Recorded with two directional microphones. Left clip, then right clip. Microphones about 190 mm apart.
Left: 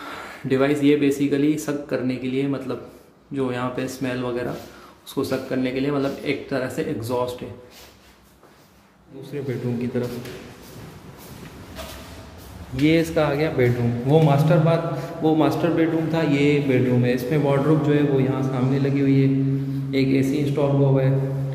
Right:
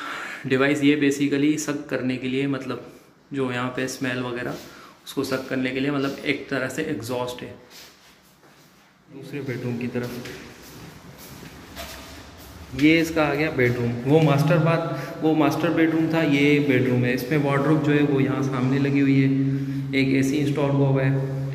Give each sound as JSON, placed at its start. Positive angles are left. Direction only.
{"t": 0.0, "sound": "speech", "side_deg": 10}
{"t": 9.3, "sound": "speech", "side_deg": 10}
{"t": 12.8, "sound": "a man's voice", "side_deg": 10}